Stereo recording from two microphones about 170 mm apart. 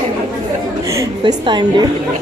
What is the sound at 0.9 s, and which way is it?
A woman's voice, 25° right (ahead or behind).